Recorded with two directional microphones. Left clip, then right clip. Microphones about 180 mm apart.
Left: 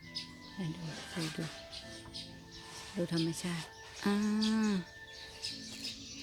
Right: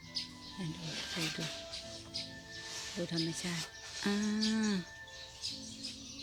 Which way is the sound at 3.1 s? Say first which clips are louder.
Even; 15° left (ahead or behind).